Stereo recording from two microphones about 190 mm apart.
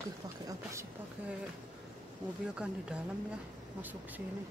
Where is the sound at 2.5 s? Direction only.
5° right (ahead or behind).